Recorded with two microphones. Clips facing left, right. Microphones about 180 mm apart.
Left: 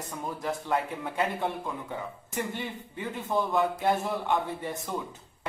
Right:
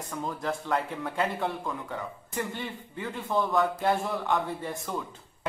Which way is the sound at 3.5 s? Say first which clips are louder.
Even; 20° left (ahead or behind).